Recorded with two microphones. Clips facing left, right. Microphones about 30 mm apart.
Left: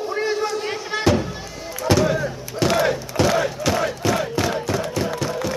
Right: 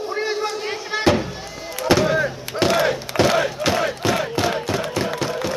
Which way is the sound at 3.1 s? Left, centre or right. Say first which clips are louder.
Right 3 dB; centre.